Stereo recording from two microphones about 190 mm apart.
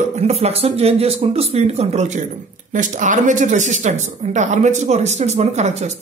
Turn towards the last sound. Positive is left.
turn(degrees=-35)  # may be behind; listen again after turning